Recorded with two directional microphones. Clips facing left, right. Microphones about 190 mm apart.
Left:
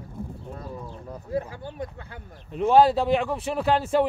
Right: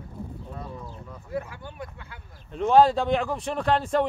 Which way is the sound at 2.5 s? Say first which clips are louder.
Left 1 dB; 5° left (ahead or behind).